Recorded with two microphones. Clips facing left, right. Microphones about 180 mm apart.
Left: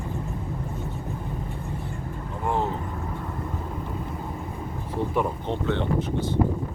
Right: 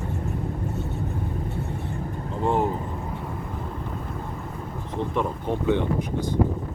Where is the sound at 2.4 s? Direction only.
20° right (ahead or behind).